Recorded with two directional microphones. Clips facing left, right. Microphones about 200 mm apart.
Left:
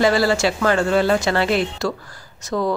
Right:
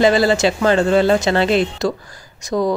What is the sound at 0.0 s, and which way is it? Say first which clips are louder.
Speech: right 3 dB; 20° right (ahead or behind).